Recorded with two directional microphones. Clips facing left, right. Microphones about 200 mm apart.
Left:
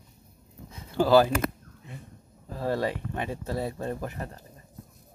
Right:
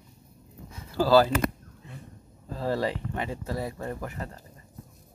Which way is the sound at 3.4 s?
20° left (ahead or behind).